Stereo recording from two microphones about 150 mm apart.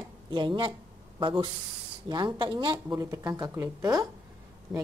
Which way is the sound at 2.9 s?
20° right (ahead or behind).